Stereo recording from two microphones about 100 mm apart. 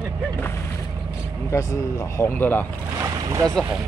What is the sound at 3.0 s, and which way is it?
Boat, 35° right (ahead or behind).